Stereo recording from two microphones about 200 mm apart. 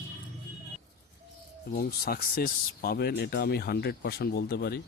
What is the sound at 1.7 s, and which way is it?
Speech, 50° left (ahead or behind).